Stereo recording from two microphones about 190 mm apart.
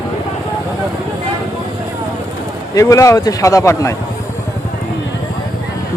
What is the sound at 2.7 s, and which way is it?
A man's voice, 15° left (ahead or behind).